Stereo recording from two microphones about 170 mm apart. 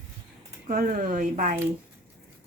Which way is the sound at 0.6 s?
50° right (ahead or behind).